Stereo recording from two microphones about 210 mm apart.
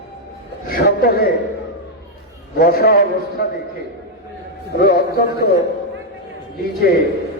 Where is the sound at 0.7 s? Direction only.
45° left (ahead or behind).